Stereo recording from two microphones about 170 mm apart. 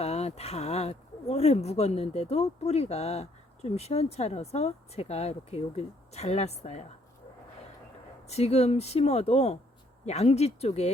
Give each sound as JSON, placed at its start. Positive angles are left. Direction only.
{"t": 0.0, "sound": "speech", "side_deg": 40}
{"t": 8.3, "sound": "speech", "side_deg": 40}